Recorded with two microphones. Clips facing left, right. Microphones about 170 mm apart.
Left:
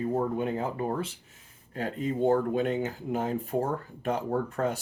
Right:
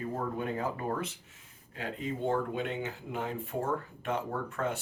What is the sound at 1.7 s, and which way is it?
Speech, 40° left (ahead or behind).